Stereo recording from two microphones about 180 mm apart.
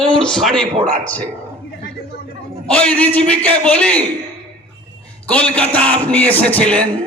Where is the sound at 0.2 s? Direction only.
Centre (ahead or behind).